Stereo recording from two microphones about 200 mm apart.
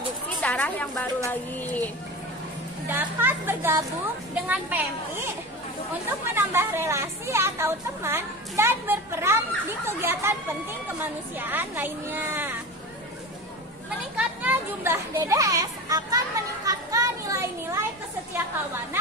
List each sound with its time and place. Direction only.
0.4 s a woman's voice: 5° left (ahead or behind)
1.3 s a sound: 10° left (ahead or behind)
2.9 s a woman's voice: 10° right (ahead or behind)
14.1 s a child's voice: 10° right (ahead or behind)
16.6 s children playing: 15° right (ahead or behind)